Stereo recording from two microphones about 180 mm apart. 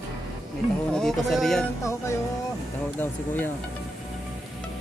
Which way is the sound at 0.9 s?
Centre (ahead or behind).